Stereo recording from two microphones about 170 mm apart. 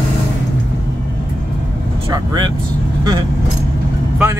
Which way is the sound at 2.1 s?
25° right (ahead or behind).